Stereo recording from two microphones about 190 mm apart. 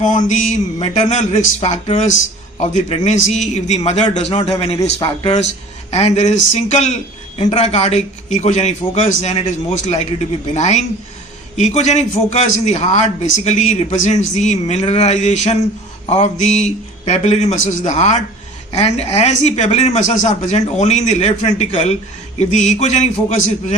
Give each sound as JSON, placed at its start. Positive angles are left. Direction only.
{"t": 0.0, "sound": "speech", "side_deg": 40}